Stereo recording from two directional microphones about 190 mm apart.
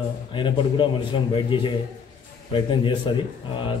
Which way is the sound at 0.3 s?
25° left (ahead or behind).